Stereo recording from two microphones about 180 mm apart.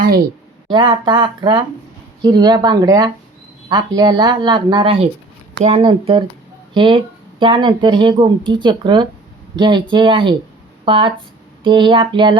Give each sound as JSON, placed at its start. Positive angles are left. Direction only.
{"t": 0.7, "sound": "speech", "side_deg": -25}